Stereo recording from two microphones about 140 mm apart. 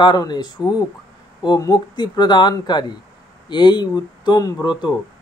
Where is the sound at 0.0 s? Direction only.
30° left (ahead or behind).